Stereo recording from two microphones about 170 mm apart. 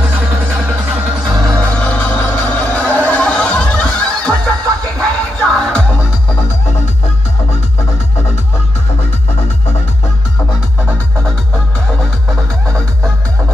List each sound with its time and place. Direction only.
0.0 s music: 10° right (ahead or behind)
1.4 s music: 20° right (ahead or behind)
1.8 s music: 10° left (ahead or behind)
3.1 s snicker: 5° left (ahead or behind)